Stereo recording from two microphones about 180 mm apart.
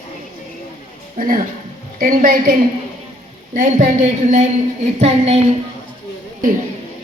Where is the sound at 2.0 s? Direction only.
50° right (ahead or behind).